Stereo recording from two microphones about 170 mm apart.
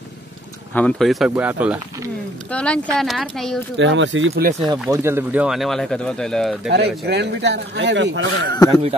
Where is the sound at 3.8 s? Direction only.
90° right.